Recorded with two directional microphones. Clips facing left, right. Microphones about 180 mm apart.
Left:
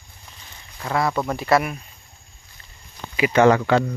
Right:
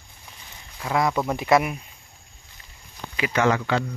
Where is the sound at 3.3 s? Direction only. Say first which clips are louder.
Left 6 dB; 40° left (ahead or behind).